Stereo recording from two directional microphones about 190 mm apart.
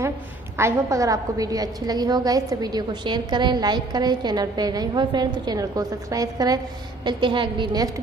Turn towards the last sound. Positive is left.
turn(degrees=-25)  # may be behind; listen again after turning